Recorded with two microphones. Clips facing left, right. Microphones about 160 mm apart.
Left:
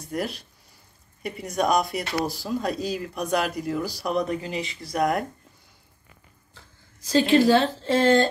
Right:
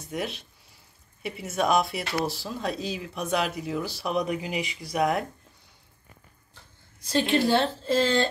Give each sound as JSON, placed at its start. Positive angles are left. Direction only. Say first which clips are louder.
{"t": 0.1, "sound": "speech", "louder": "left 3 dB", "side_deg": 0}
{"t": 4.3, "sound": "speech", "louder": "left 1 dB", "side_deg": -15}
{"t": 4.9, "sound": "speech", "louder": "left 1 dB", "side_deg": 0}
{"t": 7.2, "sound": "a woman's voice", "louder": "left 5 dB", "side_deg": 90}